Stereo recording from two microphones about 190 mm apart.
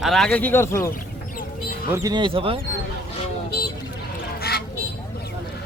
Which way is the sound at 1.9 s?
20° right (ahead or behind).